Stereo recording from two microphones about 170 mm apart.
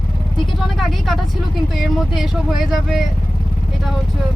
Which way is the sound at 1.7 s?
Centre (ahead or behind).